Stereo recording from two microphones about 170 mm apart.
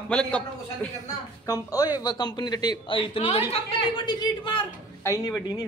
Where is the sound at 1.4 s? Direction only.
20° left (ahead or behind).